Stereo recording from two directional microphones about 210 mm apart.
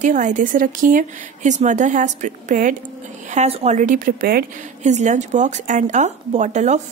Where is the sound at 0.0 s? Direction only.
35° right (ahead or behind).